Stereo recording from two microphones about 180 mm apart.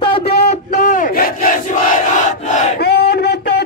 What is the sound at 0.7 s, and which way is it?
Battle cry, 45° left (ahead or behind).